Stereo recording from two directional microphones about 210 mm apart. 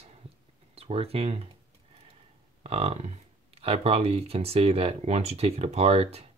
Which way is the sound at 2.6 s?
30° right (ahead or behind).